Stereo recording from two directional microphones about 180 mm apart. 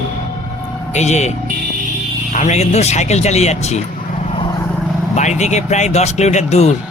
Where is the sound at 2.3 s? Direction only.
40° left (ahead or behind).